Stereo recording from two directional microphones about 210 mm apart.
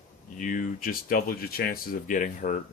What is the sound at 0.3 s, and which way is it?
Speech, 40° left (ahead or behind).